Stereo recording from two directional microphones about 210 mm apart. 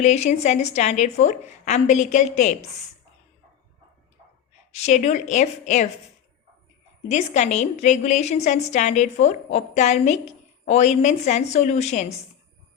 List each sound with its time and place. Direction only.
0.0 s a woman's voice: 35° left (ahead or behind)
4.7 s a woman's voice: 30° left (ahead or behind)
7.1 s a woman's voice: 35° left (ahead or behind)